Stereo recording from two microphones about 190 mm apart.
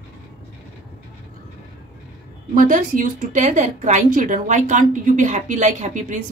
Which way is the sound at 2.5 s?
45° right (ahead or behind).